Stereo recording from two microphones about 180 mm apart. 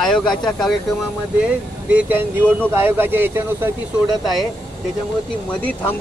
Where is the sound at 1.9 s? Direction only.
10° right (ahead or behind).